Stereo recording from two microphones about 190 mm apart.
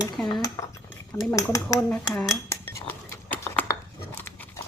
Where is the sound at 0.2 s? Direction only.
5° left (ahead or behind).